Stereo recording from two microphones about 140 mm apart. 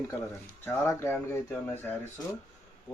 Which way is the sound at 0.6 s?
15° left (ahead or behind).